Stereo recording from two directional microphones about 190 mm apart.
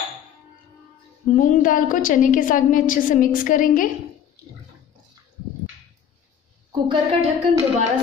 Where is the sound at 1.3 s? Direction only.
45° left (ahead or behind).